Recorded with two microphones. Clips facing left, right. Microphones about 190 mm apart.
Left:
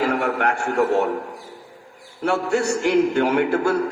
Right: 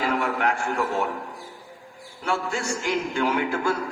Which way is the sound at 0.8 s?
40° left (ahead or behind).